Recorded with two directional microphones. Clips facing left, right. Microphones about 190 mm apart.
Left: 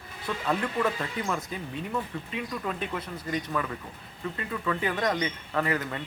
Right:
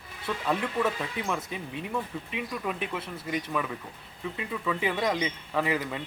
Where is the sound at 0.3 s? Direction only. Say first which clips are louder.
Even; 5° right (ahead or behind).